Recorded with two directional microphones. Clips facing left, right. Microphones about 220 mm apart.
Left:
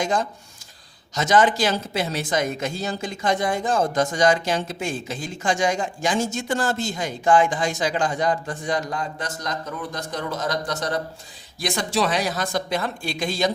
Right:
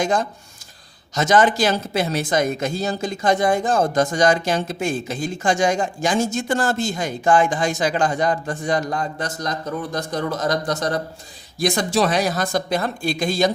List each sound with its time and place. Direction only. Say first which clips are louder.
0.0 s speech: right 3 dB; 45° right (ahead or behind)